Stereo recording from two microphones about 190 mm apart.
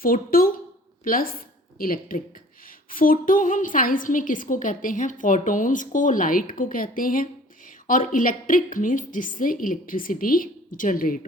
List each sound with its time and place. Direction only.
0.0 s a woman's voice: 50° left (ahead or behind)